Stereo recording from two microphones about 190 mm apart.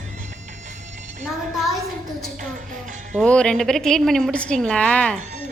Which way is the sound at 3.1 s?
5° left (ahead or behind).